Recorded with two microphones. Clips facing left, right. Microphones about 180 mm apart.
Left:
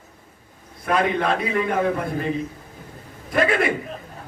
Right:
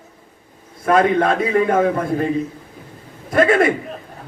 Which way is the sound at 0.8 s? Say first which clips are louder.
Right 6 dB; 45° right (ahead or behind).